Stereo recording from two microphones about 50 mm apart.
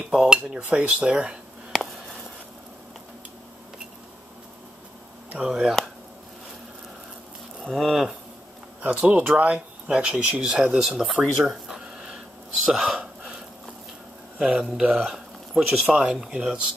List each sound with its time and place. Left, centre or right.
0.1 s speech: centre
5.5 s speech: centre
7.6 s a sound: centre
8.8 s speech: right
10.8 s a sound: centre
12.6 s speech: centre
14.4 s speech: centre
15.0 s a sound: centre
15.9 s speech: centre
16.3 s speech: right